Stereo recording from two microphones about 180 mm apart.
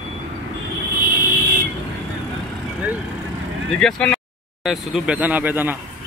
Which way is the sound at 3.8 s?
5° left (ahead or behind).